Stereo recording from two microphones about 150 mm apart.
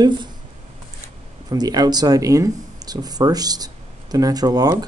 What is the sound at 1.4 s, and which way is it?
Speech, 25° right (ahead or behind).